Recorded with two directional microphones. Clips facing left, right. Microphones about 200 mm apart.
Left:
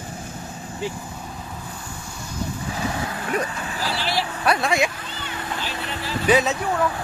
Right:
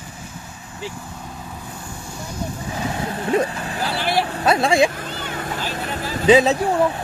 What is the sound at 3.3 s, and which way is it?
Speech, 25° right (ahead or behind).